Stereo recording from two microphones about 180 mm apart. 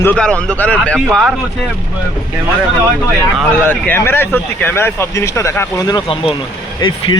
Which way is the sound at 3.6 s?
10° left (ahead or behind).